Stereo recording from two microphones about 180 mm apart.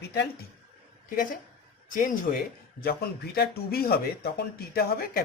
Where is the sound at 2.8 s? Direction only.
60° left (ahead or behind).